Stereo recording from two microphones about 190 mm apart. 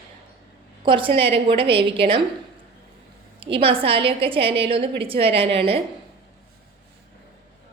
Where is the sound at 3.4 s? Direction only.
30° right (ahead or behind).